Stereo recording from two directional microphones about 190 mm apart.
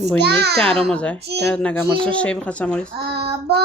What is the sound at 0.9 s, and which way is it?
Speech, 5° left (ahead or behind).